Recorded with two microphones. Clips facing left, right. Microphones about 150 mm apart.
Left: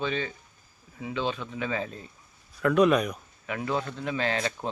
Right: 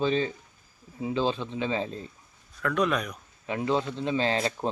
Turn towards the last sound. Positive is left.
turn(degrees=-35)  # may be behind; listen again after turning